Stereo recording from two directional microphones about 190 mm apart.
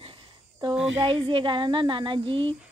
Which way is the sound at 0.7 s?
85° right.